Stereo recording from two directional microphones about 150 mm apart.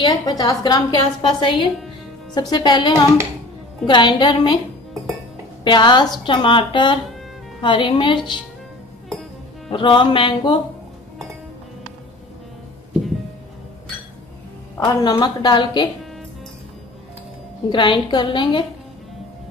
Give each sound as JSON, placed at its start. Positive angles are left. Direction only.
{"t": 0.0, "sound": "a woman's voice", "side_deg": 25}
{"t": 5.6, "sound": "a woman's voice", "side_deg": 30}
{"t": 9.7, "sound": "a woman's voice", "side_deg": 35}
{"t": 14.9, "sound": "a woman's voice", "side_deg": 25}
{"t": 17.6, "sound": "a woman's voice", "side_deg": 30}